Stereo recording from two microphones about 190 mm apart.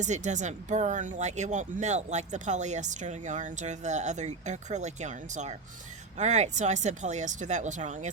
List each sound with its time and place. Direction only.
0.0 s speech: 40° right (ahead or behind)